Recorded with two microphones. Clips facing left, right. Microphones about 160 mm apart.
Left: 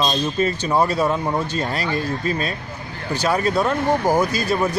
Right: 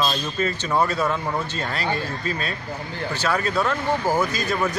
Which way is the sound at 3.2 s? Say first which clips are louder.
Left 4 dB; 35° left (ahead or behind).